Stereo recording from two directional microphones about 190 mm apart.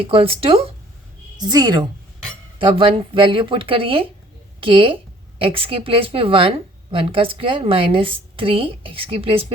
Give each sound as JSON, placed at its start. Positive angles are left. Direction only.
{"t": 0.0, "sound": "a woman's voice", "side_deg": -30}